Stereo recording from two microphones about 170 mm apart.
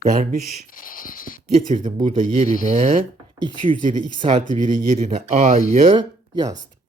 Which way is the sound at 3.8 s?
50° right (ahead or behind).